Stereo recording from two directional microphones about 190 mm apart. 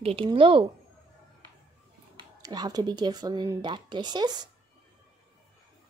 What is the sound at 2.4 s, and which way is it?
Speech, 20° right (ahead or behind).